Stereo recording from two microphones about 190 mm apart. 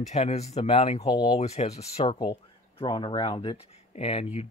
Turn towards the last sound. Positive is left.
turn(degrees=30)  # may be behind; listen again after turning